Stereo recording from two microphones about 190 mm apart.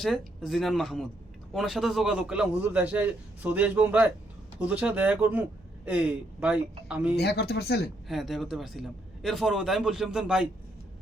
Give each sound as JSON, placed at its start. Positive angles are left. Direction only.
{"t": 0.0, "sound": "a man's voice", "side_deg": 0}
{"t": 7.2, "sound": "speech", "side_deg": 60}
{"t": 8.0, "sound": "a man's voice", "side_deg": 0}